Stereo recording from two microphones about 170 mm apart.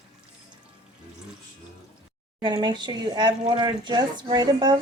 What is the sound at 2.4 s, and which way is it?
Speech, 25° right (ahead or behind).